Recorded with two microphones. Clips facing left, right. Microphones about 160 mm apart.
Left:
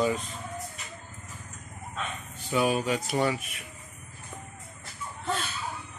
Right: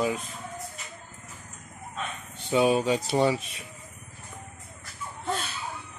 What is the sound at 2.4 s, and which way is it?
Speech, 25° right (ahead or behind).